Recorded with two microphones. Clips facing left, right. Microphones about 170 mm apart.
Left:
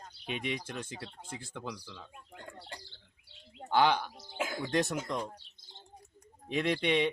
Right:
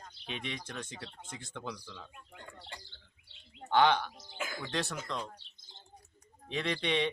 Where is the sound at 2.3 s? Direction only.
45° left (ahead or behind).